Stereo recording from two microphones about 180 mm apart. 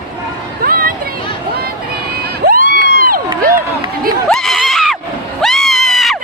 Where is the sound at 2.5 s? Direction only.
50° right (ahead or behind).